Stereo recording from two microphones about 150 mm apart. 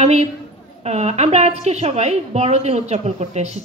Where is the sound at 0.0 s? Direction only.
45° right (ahead or behind).